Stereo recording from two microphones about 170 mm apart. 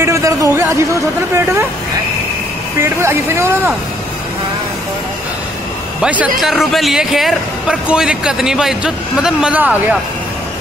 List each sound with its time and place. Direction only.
0.0 s speech: 20° right (ahead or behind)
2.8 s speech: 15° right (ahead or behind)
5.9 s a man's voice: 5° right (ahead or behind)